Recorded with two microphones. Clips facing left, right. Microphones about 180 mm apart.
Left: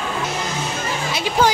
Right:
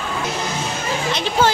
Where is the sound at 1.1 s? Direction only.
10° left (ahead or behind).